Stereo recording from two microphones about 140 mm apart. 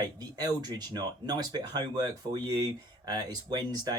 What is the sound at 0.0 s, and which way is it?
Speech, 30° right (ahead or behind).